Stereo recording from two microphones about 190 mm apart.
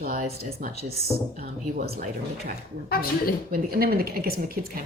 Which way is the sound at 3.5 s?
50° right (ahead or behind).